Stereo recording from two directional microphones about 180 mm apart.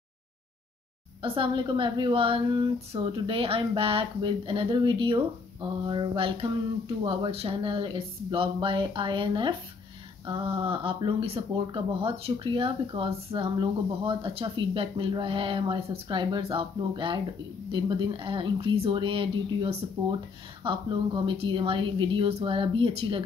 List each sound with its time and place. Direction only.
1.2 s speech: 30° right (ahead or behind)